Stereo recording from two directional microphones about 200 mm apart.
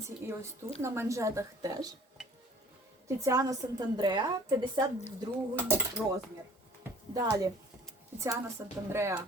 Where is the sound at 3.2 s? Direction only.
15° right (ahead or behind).